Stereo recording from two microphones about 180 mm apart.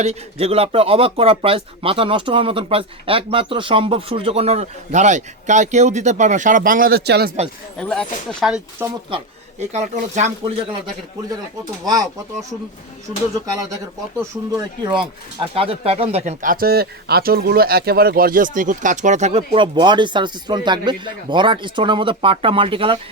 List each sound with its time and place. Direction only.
0.0 s speech: 35° right (ahead or behind); by 7.3 s 65° right (ahead or behind)
7.8 s speech: 5° left (ahead or behind)
9.1 s speech: 30° right (ahead or behind)
9.7 s speech: 40° right (ahead or behind)
14.2 s speech: 20° right (ahead or behind)
19.5 s speech: 25° right (ahead or behind)